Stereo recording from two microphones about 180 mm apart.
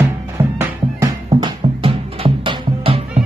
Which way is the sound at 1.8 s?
30° right (ahead or behind).